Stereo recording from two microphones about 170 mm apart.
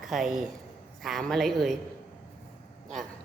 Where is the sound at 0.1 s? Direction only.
Centre (ahead or behind).